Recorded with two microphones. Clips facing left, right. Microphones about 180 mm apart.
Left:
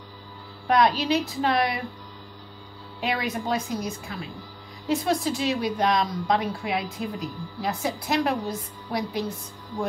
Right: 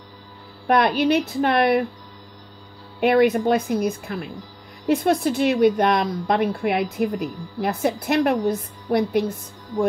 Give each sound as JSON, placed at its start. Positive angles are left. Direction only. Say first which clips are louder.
{"t": 0.7, "sound": "a woman's voice", "louder": "right 3 dB", "side_deg": -60}
{"t": 3.0, "sound": "a woman's voice", "louder": "right 11 dB", "side_deg": -60}